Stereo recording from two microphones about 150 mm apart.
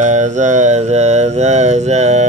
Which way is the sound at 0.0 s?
50° right (ahead or behind).